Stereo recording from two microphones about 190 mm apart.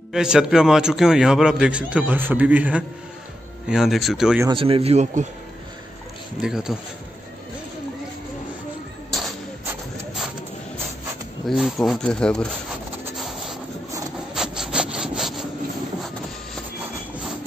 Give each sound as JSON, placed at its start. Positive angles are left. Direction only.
{"t": 0.1, "sound": "a man's voice", "side_deg": -5}
{"t": 4.5, "sound": "a man's voice", "side_deg": -30}
{"t": 6.4, "sound": "a man's voice", "side_deg": -5}
{"t": 11.4, "sound": "a man's voice", "side_deg": 0}
{"t": 13.2, "sound": "rub", "side_deg": 0}
{"t": 14.3, "sound": "wood", "side_deg": -5}